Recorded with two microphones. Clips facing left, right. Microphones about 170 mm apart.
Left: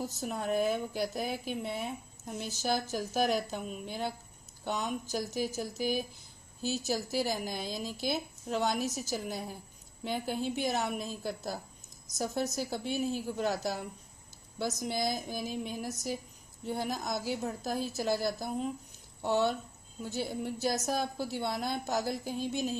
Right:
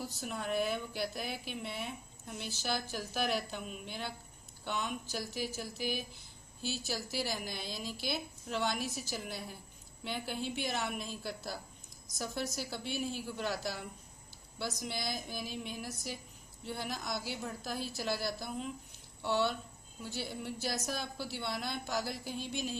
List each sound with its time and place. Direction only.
0.2 s a woman's voice: 40° left (ahead or behind)